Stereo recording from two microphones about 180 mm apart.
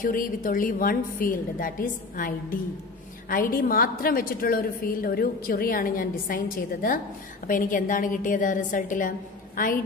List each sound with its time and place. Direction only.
0.0 s a woman's voice: 50° left (ahead or behind)